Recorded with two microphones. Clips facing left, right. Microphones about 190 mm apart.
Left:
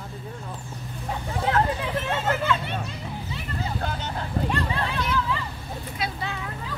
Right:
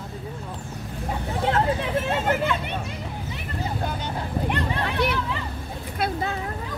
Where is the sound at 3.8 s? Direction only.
10° right (ahead or behind).